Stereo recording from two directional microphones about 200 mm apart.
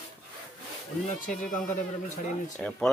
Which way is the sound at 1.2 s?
40° left (ahead or behind).